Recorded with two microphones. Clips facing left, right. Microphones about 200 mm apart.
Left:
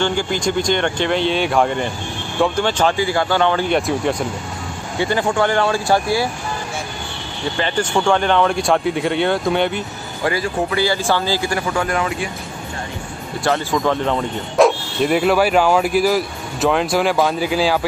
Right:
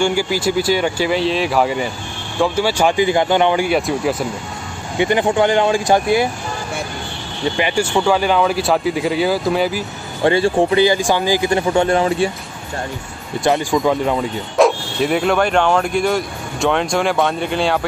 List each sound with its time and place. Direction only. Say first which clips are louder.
0.0 s speech: right 2 dB; 10° right (ahead or behind)
4.9 s speech: right 3 dB; 20° right (ahead or behind)
7.5 s speech: right 1 dB; 10° right (ahead or behind)
10.2 s speech: right 6 dB; 25° right (ahead or behind)
13.4 s speech: right 3 dB; 15° right (ahead or behind); by 17.7 s 5° left (ahead or behind)